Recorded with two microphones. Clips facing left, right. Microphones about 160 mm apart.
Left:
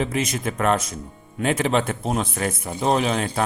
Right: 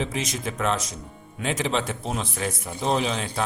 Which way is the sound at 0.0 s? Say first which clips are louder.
Left 4 dB; 55° left (ahead or behind).